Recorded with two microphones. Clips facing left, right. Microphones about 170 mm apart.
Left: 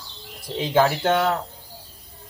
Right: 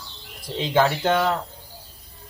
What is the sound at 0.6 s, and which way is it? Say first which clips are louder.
Speech: left 1 dB; 10° left (ahead or behind).